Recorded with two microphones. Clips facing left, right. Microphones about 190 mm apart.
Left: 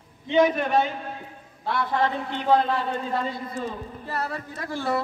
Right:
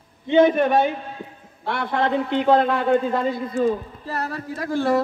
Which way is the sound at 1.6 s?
70° right (ahead or behind).